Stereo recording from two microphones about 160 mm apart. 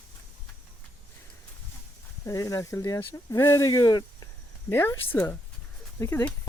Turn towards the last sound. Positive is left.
turn(degrees=15)  # may be behind; listen again after turning